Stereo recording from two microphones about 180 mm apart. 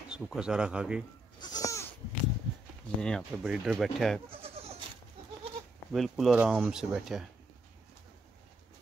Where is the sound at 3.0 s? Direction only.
5° left (ahead or behind).